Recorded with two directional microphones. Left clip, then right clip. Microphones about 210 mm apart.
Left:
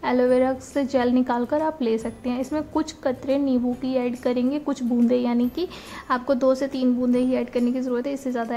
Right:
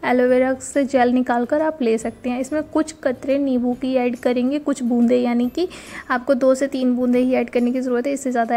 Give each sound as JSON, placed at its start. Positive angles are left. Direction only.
{"t": 0.0, "sound": "a woman's voice", "side_deg": -15}